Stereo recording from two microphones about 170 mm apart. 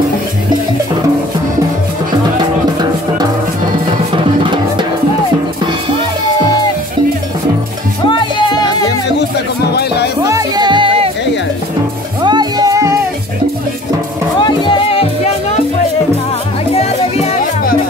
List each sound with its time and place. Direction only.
4.4 s music: 30° right (ahead or behind)
8.1 s music: 25° left (ahead or behind)
9.7 s music: 70° left (ahead or behind)
10.2 s music: 20° right (ahead or behind)
12.2 s music: 25° right (ahead or behind)
14.4 s music: 30° left (ahead or behind)
16.7 s music: 40° left (ahead or behind)